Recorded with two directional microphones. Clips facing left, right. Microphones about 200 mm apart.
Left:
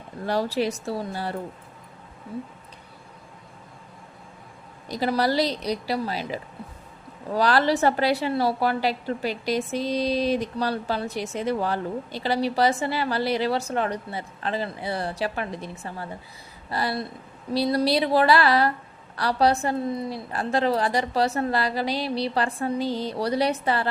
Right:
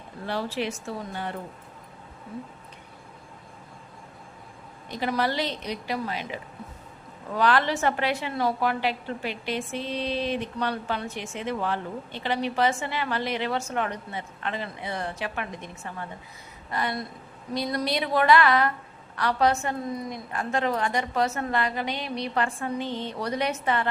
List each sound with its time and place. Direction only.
0.3 s a woman's voice: 40° left (ahead or behind)
4.9 s a woman's voice: 35° left (ahead or behind)